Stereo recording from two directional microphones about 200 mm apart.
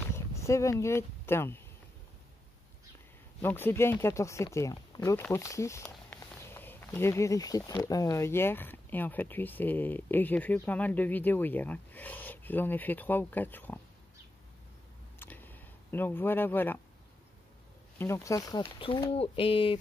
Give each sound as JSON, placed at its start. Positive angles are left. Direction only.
{"t": 0.3, "sound": "speech", "side_deg": 15}
{"t": 3.3, "sound": "speech", "side_deg": 10}
{"t": 15.1, "sound": "a sound", "side_deg": 10}
{"t": 17.9, "sound": "speech", "side_deg": 15}